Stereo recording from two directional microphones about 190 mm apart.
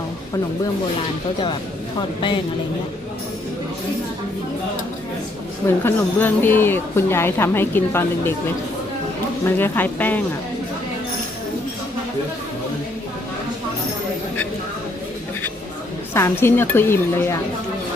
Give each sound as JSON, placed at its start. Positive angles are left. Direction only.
{"t": 2.0, "sound": "speech", "side_deg": 25}
{"t": 5.6, "sound": "speech", "side_deg": 10}
{"t": 9.6, "sound": "speech", "side_deg": 10}
{"t": 16.1, "sound": "speech", "side_deg": 15}